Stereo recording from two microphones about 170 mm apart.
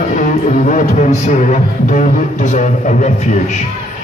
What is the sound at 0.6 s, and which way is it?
Music, 45° left (ahead or behind).